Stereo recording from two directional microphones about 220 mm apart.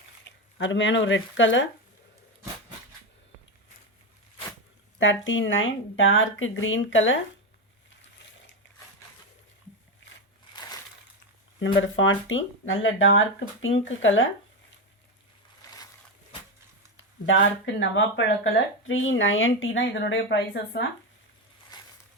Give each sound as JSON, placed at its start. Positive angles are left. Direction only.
{"t": 0.6, "sound": "speech", "side_deg": 55}
{"t": 4.9, "sound": "speech", "side_deg": 60}
{"t": 11.6, "sound": "speech", "side_deg": 60}
{"t": 17.0, "sound": "speech", "side_deg": 60}
{"t": 21.7, "sound": "a sound", "side_deg": 20}